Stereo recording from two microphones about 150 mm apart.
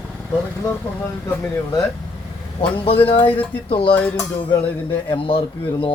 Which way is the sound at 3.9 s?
10° left (ahead or behind).